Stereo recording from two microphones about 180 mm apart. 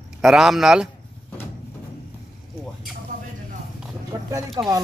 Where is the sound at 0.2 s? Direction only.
5° right (ahead or behind).